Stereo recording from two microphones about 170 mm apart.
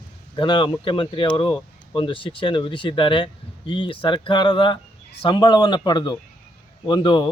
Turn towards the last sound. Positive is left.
turn(degrees=25)  # may be behind; listen again after turning